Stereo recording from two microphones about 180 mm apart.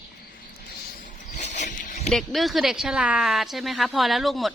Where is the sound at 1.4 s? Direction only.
40° left (ahead or behind).